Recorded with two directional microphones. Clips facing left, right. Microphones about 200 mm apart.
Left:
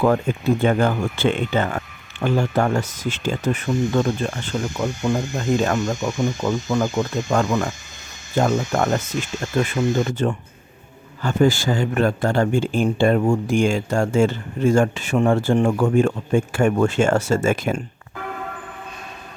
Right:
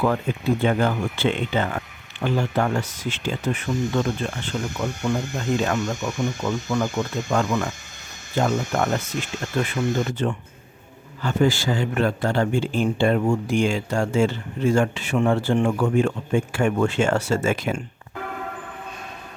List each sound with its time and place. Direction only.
0.0 s a man's voice: 45° left (ahead or behind)